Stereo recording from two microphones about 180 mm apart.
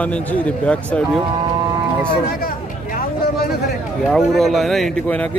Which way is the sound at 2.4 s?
55° left (ahead or behind).